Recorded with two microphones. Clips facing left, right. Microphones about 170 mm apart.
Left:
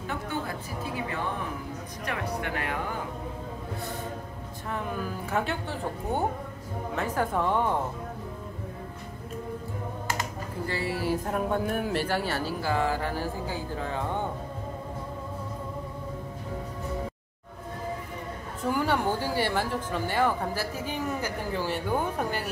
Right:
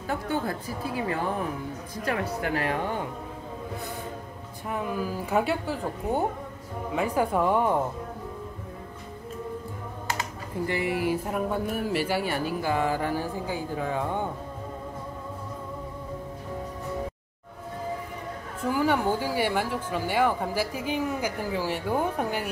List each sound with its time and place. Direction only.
2.0 s speech: 30° right (ahead or behind)
4.6 s speech: 10° right (ahead or behind)
10.7 s speech: 15° right (ahead or behind)
18.7 s speech: 5° right (ahead or behind)